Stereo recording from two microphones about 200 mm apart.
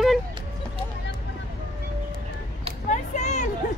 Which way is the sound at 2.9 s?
35° left (ahead or behind).